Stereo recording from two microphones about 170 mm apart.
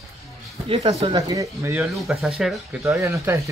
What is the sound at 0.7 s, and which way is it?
Speech, 30° right (ahead or behind).